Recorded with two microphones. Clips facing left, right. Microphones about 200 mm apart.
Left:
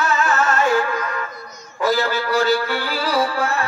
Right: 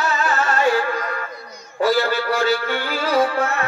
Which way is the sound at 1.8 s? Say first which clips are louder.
Right 1 dB; 40° left (ahead or behind).